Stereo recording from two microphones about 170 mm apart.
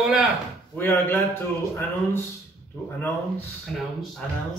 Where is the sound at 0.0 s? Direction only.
5° right (ahead or behind).